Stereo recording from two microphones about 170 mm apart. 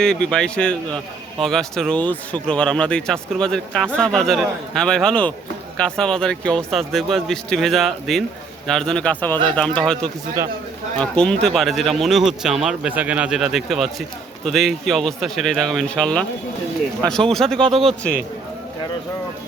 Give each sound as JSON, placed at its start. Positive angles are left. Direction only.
{"t": 0.0, "sound": "speech", "side_deg": 5}
{"t": 17.3, "sound": "speech", "side_deg": 5}
{"t": 17.6, "sound": "a man's voice", "side_deg": -35}